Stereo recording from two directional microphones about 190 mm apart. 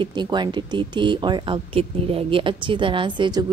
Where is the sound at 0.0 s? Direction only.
25° right (ahead or behind).